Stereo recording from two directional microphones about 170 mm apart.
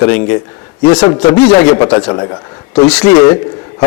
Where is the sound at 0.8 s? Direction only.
25° left (ahead or behind).